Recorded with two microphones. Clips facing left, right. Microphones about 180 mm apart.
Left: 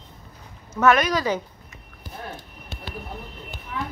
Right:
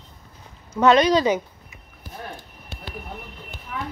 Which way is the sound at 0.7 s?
20° right (ahead or behind).